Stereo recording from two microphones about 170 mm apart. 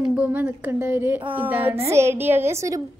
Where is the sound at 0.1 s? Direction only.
10° right (ahead or behind).